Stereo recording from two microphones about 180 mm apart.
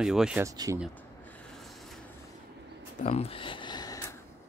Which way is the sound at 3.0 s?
35° left (ahead or behind).